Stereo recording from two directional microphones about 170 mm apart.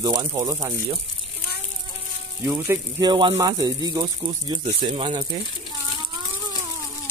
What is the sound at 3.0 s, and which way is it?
Speech, 30° right (ahead or behind).